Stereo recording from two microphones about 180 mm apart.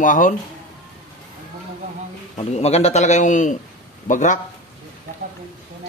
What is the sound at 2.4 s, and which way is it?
A man's voice, 35° left (ahead or behind).